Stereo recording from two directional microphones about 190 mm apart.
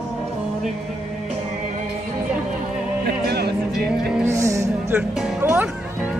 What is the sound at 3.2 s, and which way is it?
Music, 60° right (ahead or behind).